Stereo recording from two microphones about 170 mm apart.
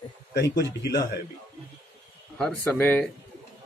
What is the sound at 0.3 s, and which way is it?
Speech, 85° left.